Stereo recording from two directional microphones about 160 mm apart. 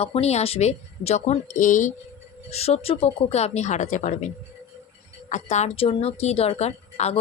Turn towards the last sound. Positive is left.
turn(degrees=40)  # may be behind; listen again after turning